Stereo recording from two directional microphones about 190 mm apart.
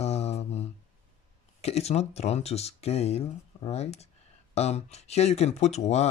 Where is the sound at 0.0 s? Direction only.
35° left (ahead or behind).